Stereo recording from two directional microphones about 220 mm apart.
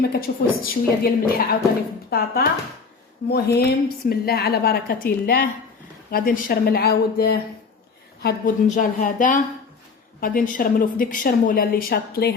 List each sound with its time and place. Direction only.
0.0 s a woman's voice: 45° left (ahead or behind)
8.6 s a woman's voice: 35° left (ahead or behind)